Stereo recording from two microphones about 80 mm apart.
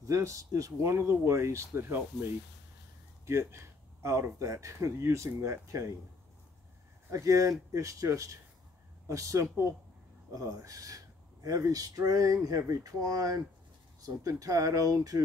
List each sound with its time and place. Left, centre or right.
0.0 s speech: right
7.1 s speech: right